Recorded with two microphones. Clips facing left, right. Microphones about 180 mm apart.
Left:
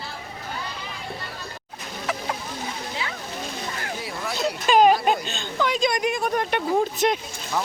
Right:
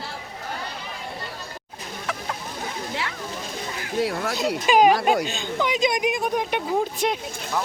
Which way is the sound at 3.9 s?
65° right (ahead or behind).